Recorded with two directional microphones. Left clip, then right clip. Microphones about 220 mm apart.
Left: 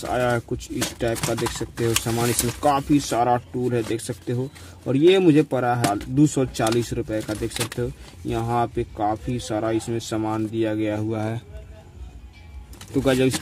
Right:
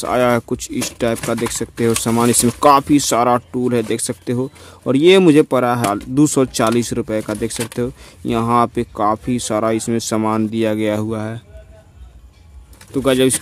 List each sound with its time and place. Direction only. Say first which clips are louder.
0.0 s speech: right 7 dB; 45° right (ahead or behind)
11.1 s speech: right 3 dB; 20° right (ahead or behind)
12.9 s speech: right 5 dB; 25° right (ahead or behind)